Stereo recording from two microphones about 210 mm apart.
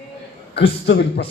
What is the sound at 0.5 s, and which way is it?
Speech, 50° left (ahead or behind).